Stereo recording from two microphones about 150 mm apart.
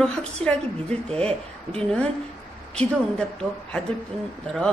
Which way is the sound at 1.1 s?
40° right (ahead or behind).